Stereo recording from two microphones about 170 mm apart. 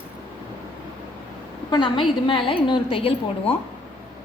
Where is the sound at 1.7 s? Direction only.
25° left (ahead or behind).